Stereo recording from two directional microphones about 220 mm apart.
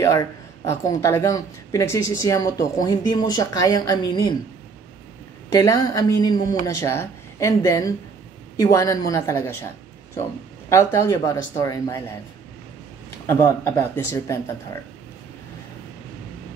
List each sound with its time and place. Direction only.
0.0 s speech: 15° left (ahead or behind)
5.5 s speech: 15° left (ahead or behind)
10.7 s speech: 10° left (ahead or behind)
13.3 s speech: 10° left (ahead or behind)